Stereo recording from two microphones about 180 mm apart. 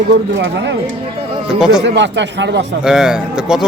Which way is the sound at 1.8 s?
85° right.